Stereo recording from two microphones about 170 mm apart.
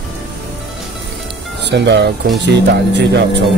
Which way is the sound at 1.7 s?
90° right.